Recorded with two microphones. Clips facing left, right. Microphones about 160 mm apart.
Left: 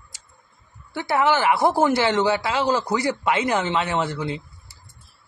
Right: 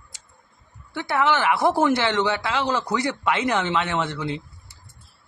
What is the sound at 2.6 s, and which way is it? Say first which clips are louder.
Speech: left 3 dB; 35° left (ahead or behind).